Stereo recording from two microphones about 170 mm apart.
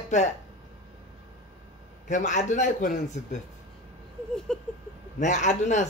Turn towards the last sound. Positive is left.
turn(degrees=45)  # may be behind; listen again after turning